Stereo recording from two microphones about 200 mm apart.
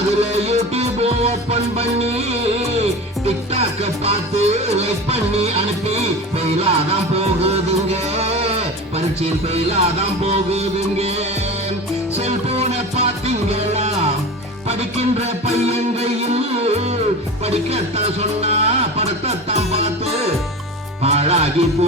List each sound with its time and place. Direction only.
0.1 s music: 30° right (ahead or behind)